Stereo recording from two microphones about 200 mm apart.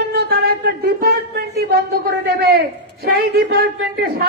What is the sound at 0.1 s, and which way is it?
Speech, 50° right (ahead or behind).